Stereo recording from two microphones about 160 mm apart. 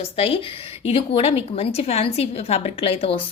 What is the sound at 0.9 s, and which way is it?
A woman's voice, 40° left (ahead or behind).